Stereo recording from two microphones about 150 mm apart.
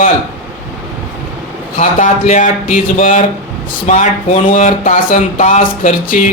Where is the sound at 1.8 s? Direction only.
55° left (ahead or behind).